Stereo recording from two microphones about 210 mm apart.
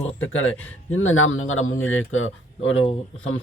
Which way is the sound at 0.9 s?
70° left (ahead or behind).